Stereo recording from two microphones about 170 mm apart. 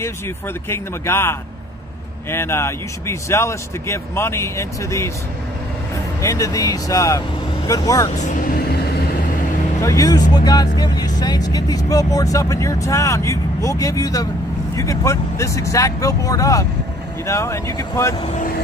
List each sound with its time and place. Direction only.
0.7 s speech: 15° left (ahead or behind)
2.3 s speech: 15° left (ahead or behind)
6.2 s speech: 20° left (ahead or behind)
8.1 s speech: 45° left (ahead or behind); by 8.9 s 65° left (ahead or behind)
9.8 s speech: 20° left (ahead or behind)
18.2 s speech: 45° left (ahead or behind)